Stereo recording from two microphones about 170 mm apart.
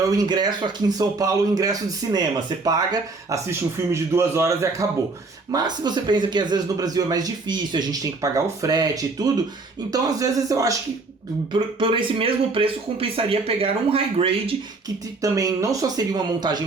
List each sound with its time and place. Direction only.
0.2 s a man's voice: 25° right (ahead or behind)
11.5 s speech: 30° right (ahead or behind)
15.2 s speech: 20° right (ahead or behind)